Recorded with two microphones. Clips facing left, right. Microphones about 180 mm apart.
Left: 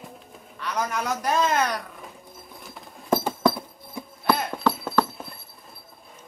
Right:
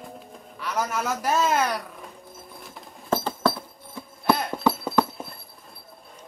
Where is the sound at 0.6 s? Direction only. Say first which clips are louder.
Even; 5° right (ahead or behind).